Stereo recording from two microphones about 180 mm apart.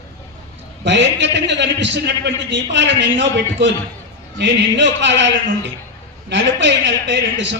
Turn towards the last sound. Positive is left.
turn(degrees=-85)